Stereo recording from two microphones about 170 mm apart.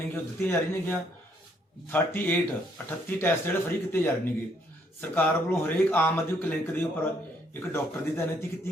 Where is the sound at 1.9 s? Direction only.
10° left (ahead or behind).